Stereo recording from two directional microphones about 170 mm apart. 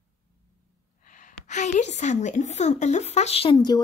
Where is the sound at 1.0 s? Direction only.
50° left (ahead or behind).